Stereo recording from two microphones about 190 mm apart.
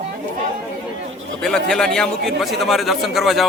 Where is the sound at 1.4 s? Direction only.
5° left (ahead or behind).